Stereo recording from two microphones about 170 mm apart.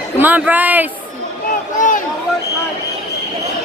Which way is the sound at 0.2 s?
10° right (ahead or behind).